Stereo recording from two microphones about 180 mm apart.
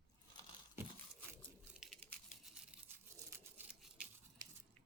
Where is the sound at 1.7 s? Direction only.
5° right (ahead or behind).